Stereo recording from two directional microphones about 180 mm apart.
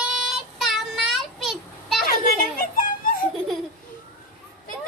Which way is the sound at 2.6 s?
50° left (ahead or behind).